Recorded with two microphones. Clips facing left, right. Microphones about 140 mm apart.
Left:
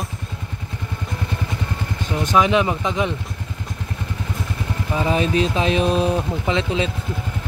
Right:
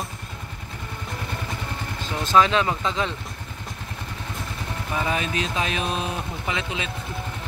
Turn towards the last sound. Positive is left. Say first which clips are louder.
# left 8 dB
turn(degrees=30)  # may be behind; listen again after turning